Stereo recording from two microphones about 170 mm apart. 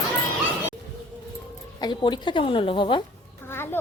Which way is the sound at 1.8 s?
25° left (ahead or behind).